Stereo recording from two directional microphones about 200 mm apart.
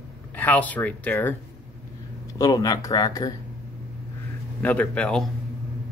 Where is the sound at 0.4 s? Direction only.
10° left (ahead or behind).